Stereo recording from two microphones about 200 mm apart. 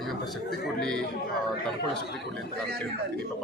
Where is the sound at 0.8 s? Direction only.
5° left (ahead or behind).